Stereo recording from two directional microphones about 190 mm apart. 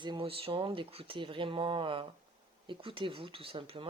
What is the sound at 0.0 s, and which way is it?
Speech, 25° right (ahead or behind).